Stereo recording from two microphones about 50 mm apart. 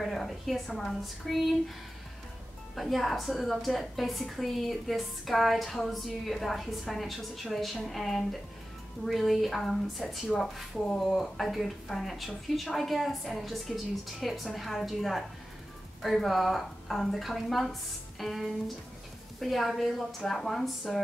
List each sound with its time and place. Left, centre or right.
0.0 s a woman's voice: centre
2.7 s a woman's voice: centre
16.3 s a woman's voice: centre